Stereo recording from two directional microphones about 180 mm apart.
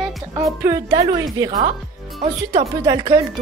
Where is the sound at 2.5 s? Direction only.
25° right (ahead or behind).